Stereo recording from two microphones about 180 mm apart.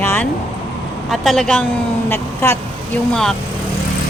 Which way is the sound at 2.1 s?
15° left (ahead or behind).